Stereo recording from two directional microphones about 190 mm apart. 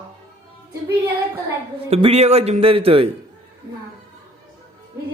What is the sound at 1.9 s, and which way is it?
Speech, 30° right (ahead or behind).